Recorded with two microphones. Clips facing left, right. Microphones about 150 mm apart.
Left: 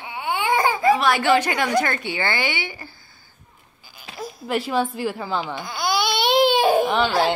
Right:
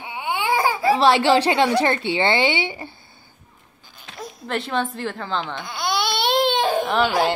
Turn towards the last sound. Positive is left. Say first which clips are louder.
# even
turn(degrees=-5)  # may be behind; listen again after turning